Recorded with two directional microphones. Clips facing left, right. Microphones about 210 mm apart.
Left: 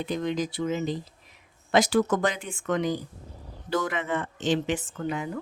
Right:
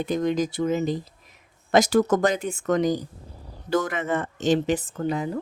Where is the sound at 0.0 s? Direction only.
45° right (ahead or behind).